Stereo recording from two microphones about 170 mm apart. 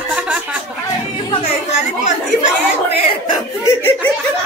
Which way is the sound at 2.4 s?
35° left (ahead or behind).